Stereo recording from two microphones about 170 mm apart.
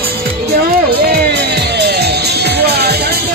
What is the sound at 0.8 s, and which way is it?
Music, 80° right.